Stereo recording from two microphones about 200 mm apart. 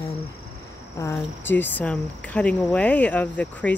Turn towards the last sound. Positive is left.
turn(degrees=5)  # may be behind; listen again after turning